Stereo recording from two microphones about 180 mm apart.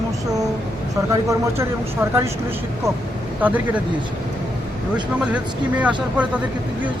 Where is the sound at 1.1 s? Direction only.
15° right (ahead or behind).